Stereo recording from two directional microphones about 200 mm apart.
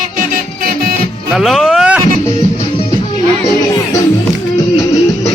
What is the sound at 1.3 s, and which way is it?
Music, centre (ahead or behind).